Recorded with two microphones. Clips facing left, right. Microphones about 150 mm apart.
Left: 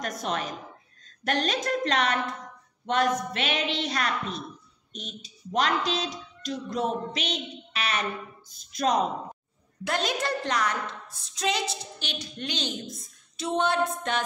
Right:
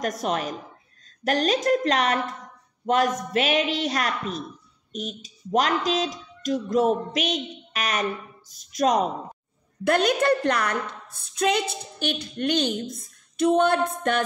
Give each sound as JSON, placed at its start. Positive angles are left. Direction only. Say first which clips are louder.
{"t": 0.0, "sound": "a woman's voice", "louder": "right 5 dB", "side_deg": -40}
{"t": 9.8, "sound": "a woman's voice", "louder": "right 8 dB", "side_deg": -55}